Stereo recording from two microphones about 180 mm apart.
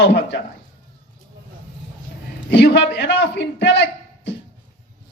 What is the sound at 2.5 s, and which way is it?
A man's voice, 75° left (ahead or behind).